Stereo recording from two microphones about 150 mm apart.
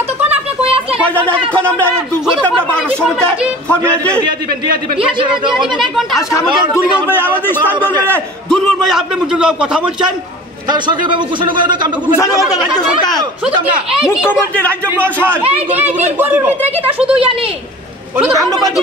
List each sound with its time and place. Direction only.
0.3 s a sound: 40° right (ahead or behind)
1.0 s speech: 10° left (ahead or behind)
5.8 s a man's voice: centre (ahead or behind)
7.1 s a man's voice: 15° left (ahead or behind)
8.8 s a man's voice: 5° right (ahead or behind)
10.7 s speech: 30° right (ahead or behind)
12.7 s speech: 25° left (ahead or behind)
14.0 s a man's voice: 5° right (ahead or behind)
14.5 s speech: 10° left (ahead or behind)
15.5 s speech: 10° right (ahead or behind)